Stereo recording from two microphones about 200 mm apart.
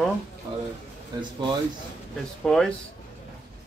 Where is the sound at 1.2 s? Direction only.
20° right (ahead or behind).